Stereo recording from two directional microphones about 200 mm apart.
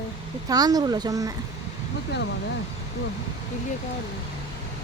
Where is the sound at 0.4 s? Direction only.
20° right (ahead or behind).